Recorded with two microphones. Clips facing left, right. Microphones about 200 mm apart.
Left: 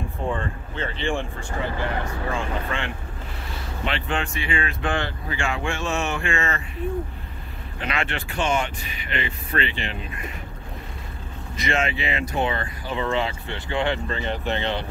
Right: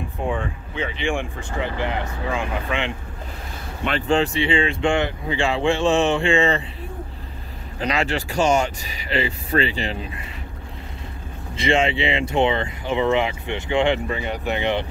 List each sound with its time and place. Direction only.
0.3 s speech: 15° right (ahead or behind)
4.1 s speech: 30° right (ahead or behind)
7.8 s speech: 40° right (ahead or behind)
11.5 s speech: 30° right (ahead or behind)